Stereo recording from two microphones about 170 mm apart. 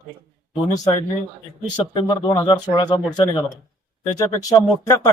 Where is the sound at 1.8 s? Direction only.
25° left (ahead or behind).